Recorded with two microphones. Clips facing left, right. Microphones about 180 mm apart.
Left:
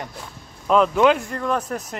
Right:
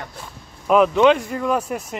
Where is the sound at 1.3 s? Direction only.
5° right (ahead or behind).